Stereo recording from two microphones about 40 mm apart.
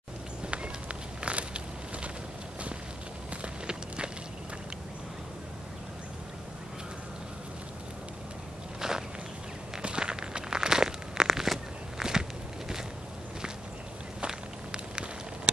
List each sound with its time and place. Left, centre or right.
0.5 s a sound: right
3.6 s walk: right
8.8 s walk: centre
14.2 s walk: right